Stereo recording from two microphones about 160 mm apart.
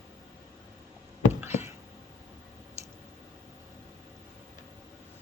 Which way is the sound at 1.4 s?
15° right (ahead or behind).